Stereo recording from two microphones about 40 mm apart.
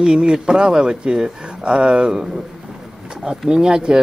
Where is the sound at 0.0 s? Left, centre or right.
Right.